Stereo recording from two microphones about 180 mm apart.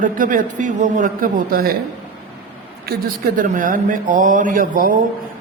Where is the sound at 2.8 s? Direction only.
55° right (ahead or behind).